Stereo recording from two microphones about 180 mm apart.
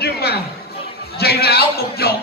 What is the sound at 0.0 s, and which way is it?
Music, 65° left (ahead or behind).